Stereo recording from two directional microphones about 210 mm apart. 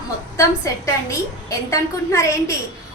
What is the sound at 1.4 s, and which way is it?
A woman's voice, 15° left (ahead or behind).